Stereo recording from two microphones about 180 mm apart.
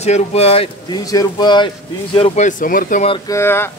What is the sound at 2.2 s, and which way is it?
Speech, 40° left (ahead or behind).